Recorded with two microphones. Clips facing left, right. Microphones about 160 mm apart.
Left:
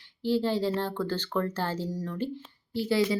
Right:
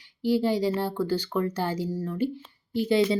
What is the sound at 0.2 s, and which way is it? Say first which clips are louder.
Speech: right 3 dB; 15° right (ahead or behind).